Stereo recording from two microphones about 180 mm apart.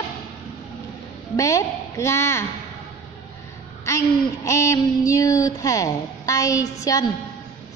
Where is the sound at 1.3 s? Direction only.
15° left (ahead or behind).